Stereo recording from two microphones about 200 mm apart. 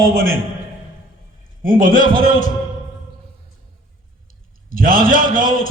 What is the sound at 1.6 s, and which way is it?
Speech, 45° right (ahead or behind).